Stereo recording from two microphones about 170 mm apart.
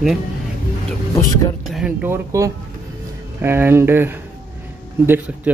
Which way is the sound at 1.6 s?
Centre (ahead or behind).